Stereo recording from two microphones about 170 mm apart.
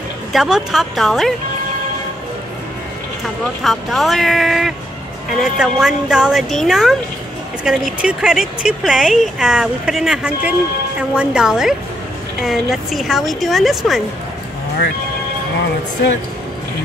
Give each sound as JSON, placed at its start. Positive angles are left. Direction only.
{"t": 0.3, "sound": "a woman's voice", "side_deg": 0}
{"t": 3.6, "sound": "a woman's voice", "side_deg": 0}